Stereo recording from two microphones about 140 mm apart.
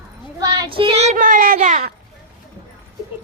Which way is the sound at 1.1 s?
75° right (ahead or behind).